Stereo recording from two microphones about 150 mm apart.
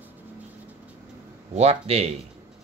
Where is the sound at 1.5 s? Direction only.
45° right (ahead or behind).